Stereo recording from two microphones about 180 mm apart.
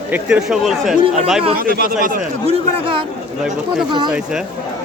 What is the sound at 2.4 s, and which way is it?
Speech, 30° right (ahead or behind).